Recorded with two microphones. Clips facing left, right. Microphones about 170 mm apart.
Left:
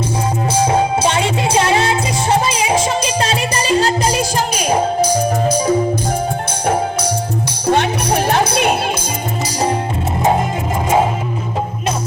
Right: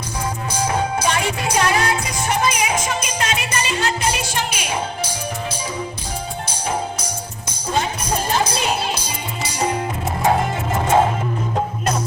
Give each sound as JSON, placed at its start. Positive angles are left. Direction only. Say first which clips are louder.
{"t": 0.7, "sound": "music", "louder": "left 5 dB", "side_deg": 25}
{"t": 7.7, "sound": "music", "louder": "left 7 dB", "side_deg": 70}